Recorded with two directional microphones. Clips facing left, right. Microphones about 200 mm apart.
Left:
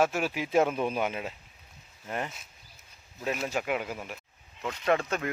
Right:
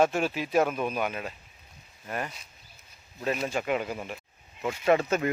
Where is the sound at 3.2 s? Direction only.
5° left (ahead or behind).